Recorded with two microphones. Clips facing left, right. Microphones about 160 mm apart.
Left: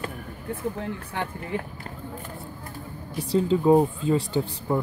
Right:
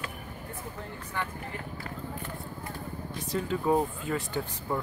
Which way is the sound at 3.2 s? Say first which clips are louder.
Left 8 dB; 30° left (ahead or behind).